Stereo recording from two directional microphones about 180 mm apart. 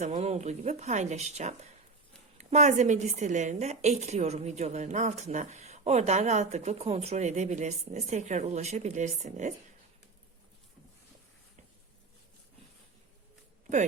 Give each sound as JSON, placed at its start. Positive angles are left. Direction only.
{"t": 0.0, "sound": "a woman's voice", "side_deg": -40}